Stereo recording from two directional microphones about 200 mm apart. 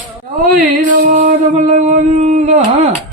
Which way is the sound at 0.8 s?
45° right (ahead or behind).